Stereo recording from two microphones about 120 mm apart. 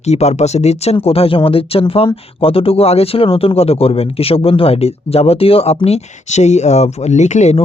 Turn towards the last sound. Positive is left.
turn(degrees=75)  # may be behind; listen again after turning